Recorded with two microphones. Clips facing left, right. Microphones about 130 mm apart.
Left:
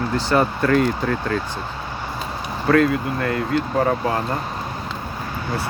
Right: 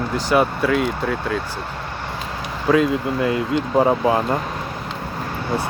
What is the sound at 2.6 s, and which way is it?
Speech, 15° right (ahead or behind).